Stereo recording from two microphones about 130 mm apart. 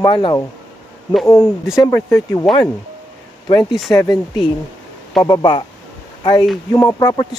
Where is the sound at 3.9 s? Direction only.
30° left (ahead or behind).